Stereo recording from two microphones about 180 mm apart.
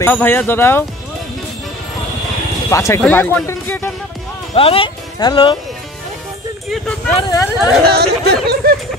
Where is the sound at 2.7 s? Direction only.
15° left (ahead or behind).